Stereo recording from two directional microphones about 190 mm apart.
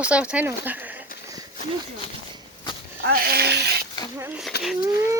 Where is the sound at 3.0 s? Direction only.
55° right (ahead or behind).